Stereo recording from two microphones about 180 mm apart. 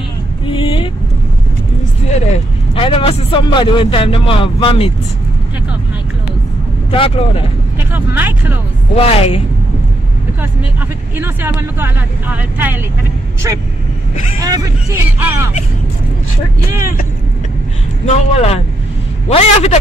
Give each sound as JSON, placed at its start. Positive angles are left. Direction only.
{"t": 2.1, "sound": "a man's voice", "side_deg": 35}
{"t": 6.9, "sound": "a man's voice", "side_deg": 30}
{"t": 7.9, "sound": "speech", "side_deg": -10}
{"t": 8.9, "sound": "a man's voice", "side_deg": 35}
{"t": 11.1, "sound": "speech", "side_deg": -10}
{"t": 18.0, "sound": "a man's voice", "side_deg": 35}